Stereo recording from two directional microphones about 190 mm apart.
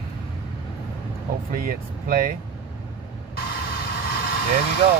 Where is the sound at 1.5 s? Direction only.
50° right (ahead or behind).